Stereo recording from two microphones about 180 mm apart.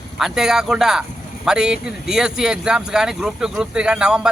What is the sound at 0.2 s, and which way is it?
Speech, 5° right (ahead or behind).